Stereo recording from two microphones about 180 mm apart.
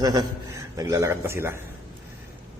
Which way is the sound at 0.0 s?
20° right (ahead or behind).